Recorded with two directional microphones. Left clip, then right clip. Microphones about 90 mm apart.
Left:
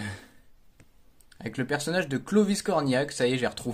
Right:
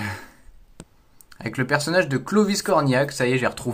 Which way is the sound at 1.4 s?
35° left (ahead or behind).